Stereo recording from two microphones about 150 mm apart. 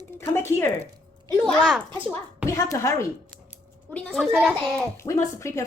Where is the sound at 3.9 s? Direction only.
Centre (ahead or behind).